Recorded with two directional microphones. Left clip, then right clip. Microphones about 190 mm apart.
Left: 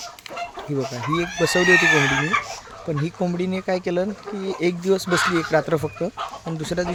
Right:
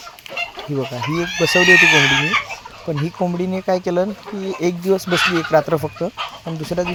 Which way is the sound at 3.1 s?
5° right (ahead or behind).